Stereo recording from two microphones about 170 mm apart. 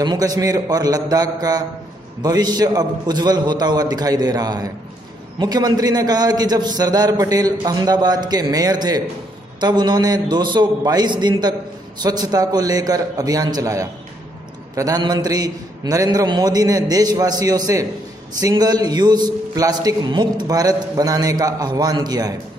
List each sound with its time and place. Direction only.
0.0 s a man's voice: 25° right (ahead or behind)